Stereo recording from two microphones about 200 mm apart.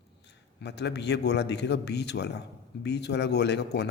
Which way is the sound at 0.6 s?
55° left (ahead or behind).